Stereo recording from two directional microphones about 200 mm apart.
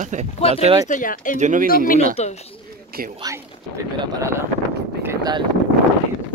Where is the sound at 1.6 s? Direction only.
45° left (ahead or behind).